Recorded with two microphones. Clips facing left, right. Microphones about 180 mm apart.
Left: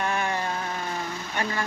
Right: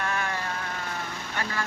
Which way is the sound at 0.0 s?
20° left (ahead or behind).